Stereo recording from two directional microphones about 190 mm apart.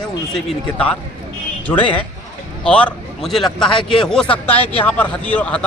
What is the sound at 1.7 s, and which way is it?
Speech, 15° left (ahead or behind).